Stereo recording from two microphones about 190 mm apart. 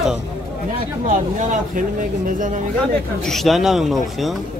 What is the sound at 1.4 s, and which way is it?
Speech, 40° right (ahead or behind).